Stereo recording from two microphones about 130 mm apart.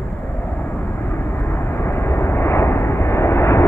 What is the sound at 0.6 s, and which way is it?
Vehicle, 15° left (ahead or behind).